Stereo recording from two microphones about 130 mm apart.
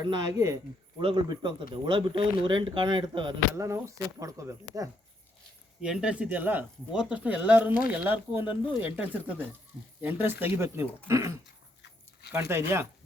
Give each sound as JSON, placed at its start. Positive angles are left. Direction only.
{"t": 0.0, "sound": "speech", "side_deg": -25}
{"t": 0.9, "sound": "speech", "side_deg": -35}
{"t": 3.5, "sound": "speech", "side_deg": -20}
{"t": 5.8, "sound": "speech", "side_deg": -5}